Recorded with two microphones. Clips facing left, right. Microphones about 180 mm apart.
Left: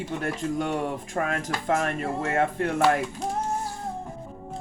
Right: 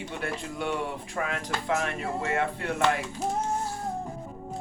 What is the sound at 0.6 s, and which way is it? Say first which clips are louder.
Speech: left 3 dB; 45° left (ahead or behind).